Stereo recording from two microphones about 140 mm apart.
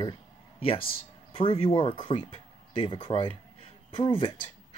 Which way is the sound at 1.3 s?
40° left (ahead or behind).